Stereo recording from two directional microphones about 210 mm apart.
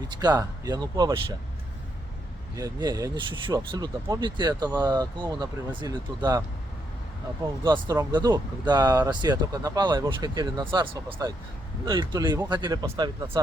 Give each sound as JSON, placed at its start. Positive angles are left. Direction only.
{"t": 0.1, "sound": "speech", "side_deg": -20}
{"t": 2.6, "sound": "speech", "side_deg": -20}
{"t": 7.4, "sound": "speech", "side_deg": -20}